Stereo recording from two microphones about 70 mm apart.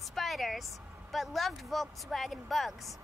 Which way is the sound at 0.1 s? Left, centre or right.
Centre.